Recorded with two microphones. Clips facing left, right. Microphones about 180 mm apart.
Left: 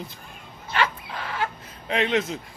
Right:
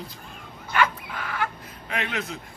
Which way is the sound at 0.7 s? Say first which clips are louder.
Right 1 dB; 25° left (ahead or behind).